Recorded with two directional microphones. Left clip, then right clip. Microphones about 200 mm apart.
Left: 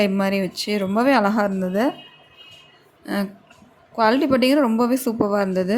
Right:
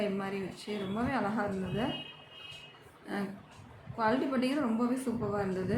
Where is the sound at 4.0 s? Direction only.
50° left (ahead or behind).